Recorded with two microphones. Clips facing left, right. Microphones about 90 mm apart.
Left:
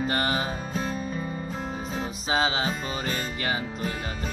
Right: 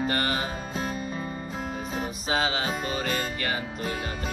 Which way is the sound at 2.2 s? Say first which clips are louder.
Left 2 dB; 25° left (ahead or behind).